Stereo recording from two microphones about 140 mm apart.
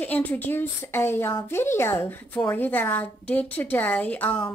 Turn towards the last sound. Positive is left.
turn(degrees=10)  # may be behind; listen again after turning